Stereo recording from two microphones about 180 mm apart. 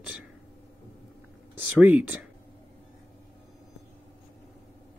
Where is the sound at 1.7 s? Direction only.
10° right (ahead or behind).